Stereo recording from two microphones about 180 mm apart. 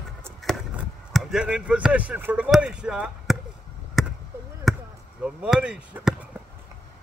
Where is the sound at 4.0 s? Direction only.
Centre (ahead or behind).